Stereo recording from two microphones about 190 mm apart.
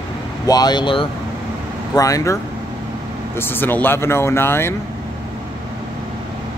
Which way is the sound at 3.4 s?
10° left (ahead or behind).